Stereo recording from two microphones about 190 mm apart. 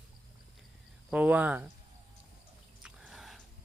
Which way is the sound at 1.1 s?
10° right (ahead or behind).